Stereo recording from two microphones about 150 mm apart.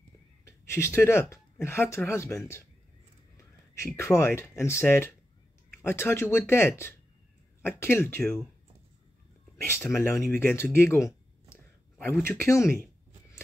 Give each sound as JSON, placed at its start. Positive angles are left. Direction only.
{"t": 0.5, "sound": "speech", "side_deg": 15}
{"t": 3.3, "sound": "a sound", "side_deg": 20}
{"t": 4.4, "sound": "speech", "side_deg": 15}
{"t": 9.9, "sound": "speech", "side_deg": 15}